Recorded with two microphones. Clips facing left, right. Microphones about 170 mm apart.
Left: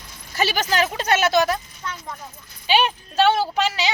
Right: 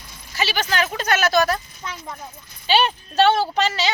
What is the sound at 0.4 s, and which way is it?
A woman's voice, 40° left (ahead or behind).